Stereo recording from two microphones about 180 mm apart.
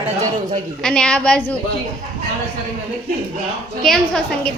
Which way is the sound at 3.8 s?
5° left (ahead or behind).